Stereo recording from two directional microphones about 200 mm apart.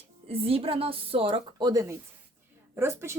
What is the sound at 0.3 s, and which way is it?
A woman's voice, 30° right (ahead or behind).